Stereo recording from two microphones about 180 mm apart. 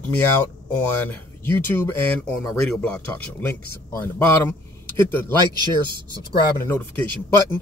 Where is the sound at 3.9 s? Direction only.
15° left (ahead or behind).